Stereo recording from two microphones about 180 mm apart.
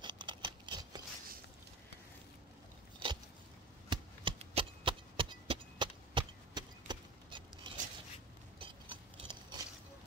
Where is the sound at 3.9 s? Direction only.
30° right (ahead or behind).